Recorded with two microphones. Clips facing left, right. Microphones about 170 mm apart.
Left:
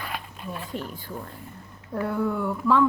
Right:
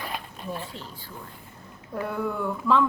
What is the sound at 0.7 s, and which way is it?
Speech, 55° left (ahead or behind).